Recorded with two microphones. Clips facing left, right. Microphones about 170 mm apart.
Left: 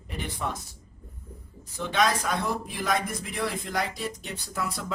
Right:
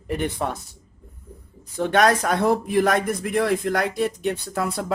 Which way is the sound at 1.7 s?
55° right (ahead or behind).